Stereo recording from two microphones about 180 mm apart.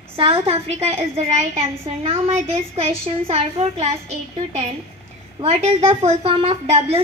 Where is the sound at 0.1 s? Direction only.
35° right (ahead or behind).